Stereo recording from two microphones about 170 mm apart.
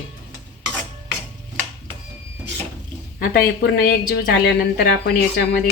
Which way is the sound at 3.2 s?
65° left (ahead or behind).